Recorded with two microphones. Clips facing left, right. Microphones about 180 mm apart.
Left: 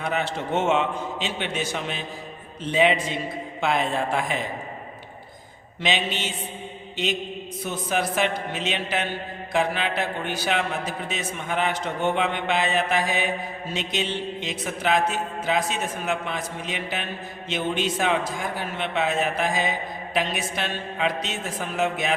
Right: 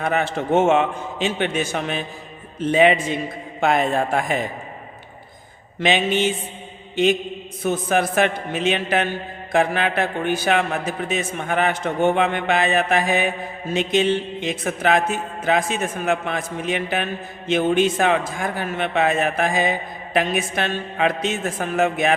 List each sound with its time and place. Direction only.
0.0 s a man's voice: 50° right (ahead or behind)
5.8 s a man's voice: 50° right (ahead or behind)
6.9 s mantra: 50° right (ahead or behind)
7.6 s a man's voice: 50° right (ahead or behind)